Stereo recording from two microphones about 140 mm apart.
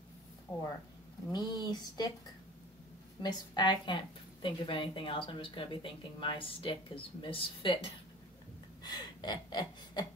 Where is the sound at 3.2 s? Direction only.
30° left (ahead or behind).